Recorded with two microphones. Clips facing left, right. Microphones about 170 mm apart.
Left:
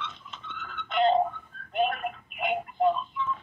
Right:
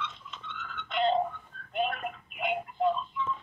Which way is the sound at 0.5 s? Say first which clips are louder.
Left 4 dB; 50° left (ahead or behind).